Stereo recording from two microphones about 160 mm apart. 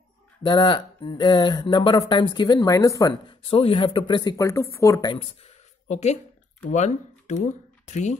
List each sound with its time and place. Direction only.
0.4 s speech: 30° left (ahead or behind)
3.4 s speech: 35° left (ahead or behind); by 5.1 s 20° left (ahead or behind)
5.1 s speech: 40° left (ahead or behind)